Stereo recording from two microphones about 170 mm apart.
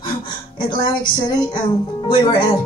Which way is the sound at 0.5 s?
25° left (ahead or behind).